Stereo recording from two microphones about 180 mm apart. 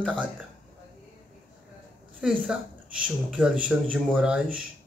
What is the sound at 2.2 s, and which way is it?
A woman's voice, 5° right (ahead or behind).